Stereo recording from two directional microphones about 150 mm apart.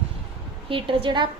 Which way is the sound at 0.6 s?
35° right (ahead or behind).